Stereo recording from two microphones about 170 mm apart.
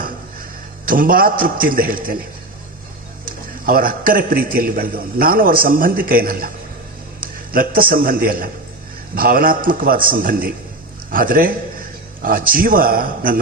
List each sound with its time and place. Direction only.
0.9 s a man's voice: 55° right (ahead or behind)
3.7 s a man's voice: 60° right (ahead or behind)